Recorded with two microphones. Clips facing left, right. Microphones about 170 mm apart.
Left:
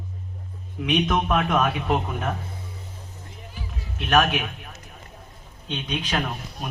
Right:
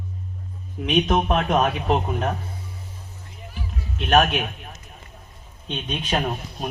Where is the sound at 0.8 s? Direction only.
35° right (ahead or behind).